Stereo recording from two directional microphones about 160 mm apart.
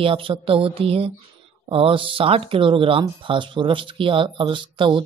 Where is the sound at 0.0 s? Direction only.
35° right (ahead or behind).